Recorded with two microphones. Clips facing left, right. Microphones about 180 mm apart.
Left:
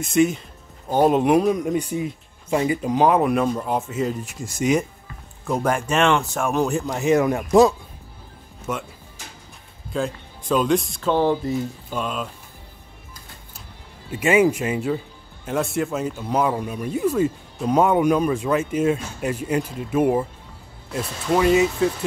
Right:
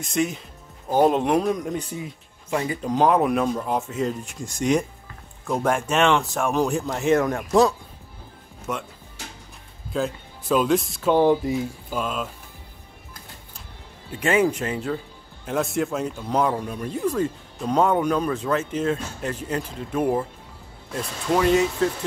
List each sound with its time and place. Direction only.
0.0 s speech: centre (ahead or behind)
2.9 s speech: 5° left (ahead or behind)
8.7 s speech: centre (ahead or behind)
9.9 s speech: 5° right (ahead or behind)
14.1 s speech: 10° left (ahead or behind)